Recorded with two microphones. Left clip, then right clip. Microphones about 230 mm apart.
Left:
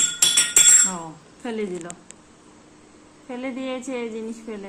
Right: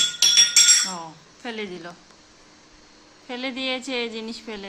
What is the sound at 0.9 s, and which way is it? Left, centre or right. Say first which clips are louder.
Speech: left 1 dB; centre.